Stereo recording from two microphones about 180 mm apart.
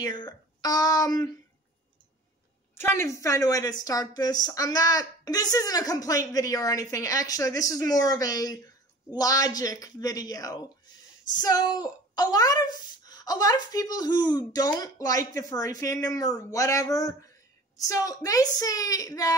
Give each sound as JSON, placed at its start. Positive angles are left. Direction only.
{"t": 0.0, "sound": "a woman's voice", "side_deg": 25}
{"t": 2.7, "sound": "a woman's voice", "side_deg": 15}